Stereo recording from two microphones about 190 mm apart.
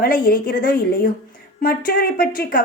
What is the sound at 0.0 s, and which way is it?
A woman's voice, 50° left (ahead or behind).